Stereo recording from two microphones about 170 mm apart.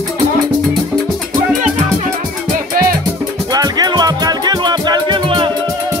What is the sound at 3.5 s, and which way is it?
Music, 25° right (ahead or behind).